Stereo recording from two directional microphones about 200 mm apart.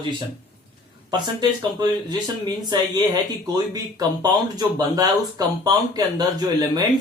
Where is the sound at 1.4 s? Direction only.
20° right (ahead or behind).